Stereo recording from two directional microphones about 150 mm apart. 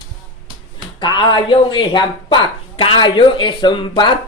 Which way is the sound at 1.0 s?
30° left (ahead or behind).